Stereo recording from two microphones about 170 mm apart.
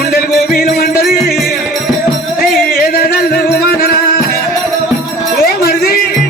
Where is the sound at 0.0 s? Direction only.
65° left (ahead or behind).